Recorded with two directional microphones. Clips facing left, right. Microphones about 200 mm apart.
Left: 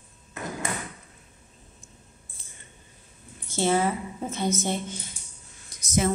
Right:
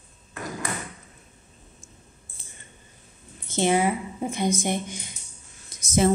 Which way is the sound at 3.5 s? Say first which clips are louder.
Right 2 dB; 15° right (ahead or behind).